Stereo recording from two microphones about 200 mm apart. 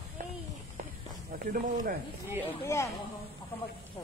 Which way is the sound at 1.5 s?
45° right (ahead or behind).